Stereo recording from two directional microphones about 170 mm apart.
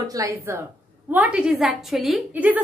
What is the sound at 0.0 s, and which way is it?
A woman's voice, 20° right (ahead or behind).